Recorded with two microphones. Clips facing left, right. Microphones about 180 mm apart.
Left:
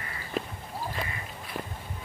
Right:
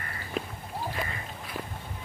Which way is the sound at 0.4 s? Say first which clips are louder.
Left 1 dB; centre (ahead or behind).